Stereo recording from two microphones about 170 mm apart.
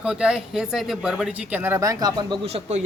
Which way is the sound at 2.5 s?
40° right (ahead or behind).